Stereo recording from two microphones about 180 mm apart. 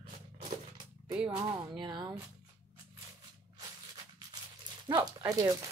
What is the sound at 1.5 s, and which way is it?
Speech, 20° right (ahead or behind).